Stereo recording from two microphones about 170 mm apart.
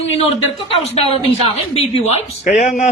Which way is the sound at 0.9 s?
35° left (ahead or behind).